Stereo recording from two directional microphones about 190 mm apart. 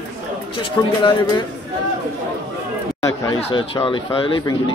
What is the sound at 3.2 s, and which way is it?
Speech, 20° left (ahead or behind).